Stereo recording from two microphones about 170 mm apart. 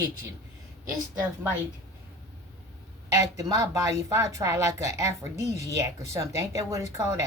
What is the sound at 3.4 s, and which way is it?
Speech, 20° right (ahead or behind).